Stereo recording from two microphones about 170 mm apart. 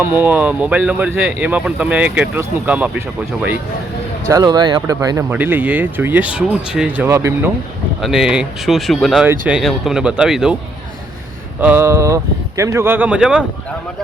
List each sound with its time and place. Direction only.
0.0 s speech: 10° right (ahead or behind)
4.3 s speech: 25° right (ahead or behind)
5.3 s speech: 10° right (ahead or behind)
8.0 s speech: 5° right (ahead or behind)
11.6 s speech: 10° right (ahead or behind)